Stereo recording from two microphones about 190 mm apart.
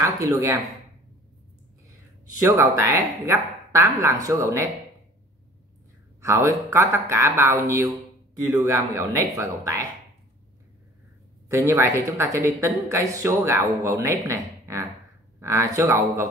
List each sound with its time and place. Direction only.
0.0 s speech: 15° right (ahead or behind)
2.4 s speech: 15° right (ahead or behind)
6.2 s speech: 15° right (ahead or behind)
11.4 s speech: 15° right (ahead or behind)